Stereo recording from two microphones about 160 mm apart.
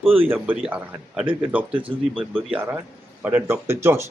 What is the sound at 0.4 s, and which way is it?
A man's voice, 5° right (ahead or behind).